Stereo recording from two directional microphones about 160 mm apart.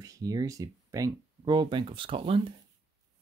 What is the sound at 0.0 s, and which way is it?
Speech, 20° right (ahead or behind).